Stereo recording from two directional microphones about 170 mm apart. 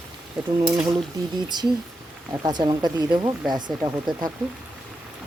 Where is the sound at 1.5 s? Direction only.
25° right (ahead or behind).